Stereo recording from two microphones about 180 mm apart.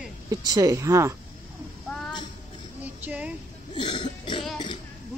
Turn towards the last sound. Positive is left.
turn(degrees=25)  # may be behind; listen again after turning